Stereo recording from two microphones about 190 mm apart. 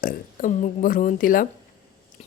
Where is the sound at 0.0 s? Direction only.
45° left (ahead or behind).